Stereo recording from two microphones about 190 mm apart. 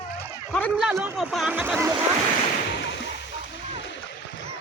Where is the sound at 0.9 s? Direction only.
10° right (ahead or behind).